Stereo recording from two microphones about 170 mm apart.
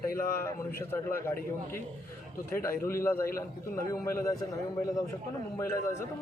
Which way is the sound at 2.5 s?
15° left (ahead or behind).